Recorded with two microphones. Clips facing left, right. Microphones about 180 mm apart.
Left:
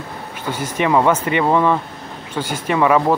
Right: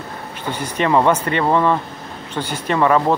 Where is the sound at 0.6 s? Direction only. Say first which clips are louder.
Even; 10° left (ahead or behind).